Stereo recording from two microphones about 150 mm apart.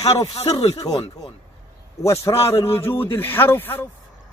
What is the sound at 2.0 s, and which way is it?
A man's voice, 20° left (ahead or behind).